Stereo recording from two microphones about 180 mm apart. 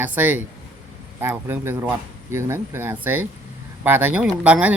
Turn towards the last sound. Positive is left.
turn(degrees=-10)  # may be behind; listen again after turning